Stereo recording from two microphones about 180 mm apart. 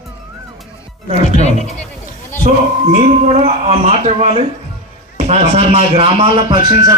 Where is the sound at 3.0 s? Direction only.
40° right (ahead or behind).